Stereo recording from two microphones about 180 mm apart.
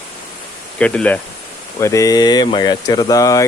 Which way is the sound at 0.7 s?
5° left (ahead or behind).